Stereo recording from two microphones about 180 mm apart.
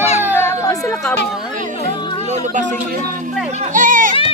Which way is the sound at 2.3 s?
40° right (ahead or behind).